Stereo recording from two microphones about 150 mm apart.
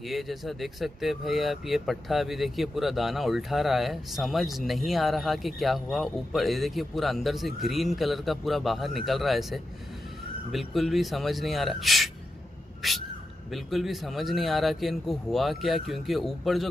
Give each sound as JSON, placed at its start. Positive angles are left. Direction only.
{"t": 0.0, "sound": "speech", "side_deg": 0}
{"t": 10.7, "sound": "speech", "side_deg": 0}